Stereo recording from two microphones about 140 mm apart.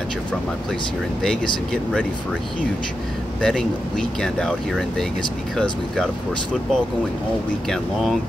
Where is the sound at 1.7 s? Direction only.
5° left (ahead or behind).